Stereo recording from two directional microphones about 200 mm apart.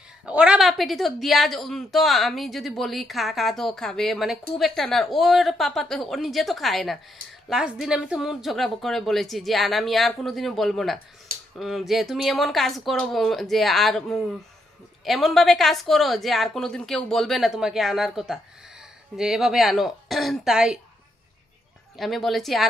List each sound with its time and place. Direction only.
0.2 s a woman's voice: 5° right (ahead or behind)
21.9 s a woman's voice: centre (ahead or behind)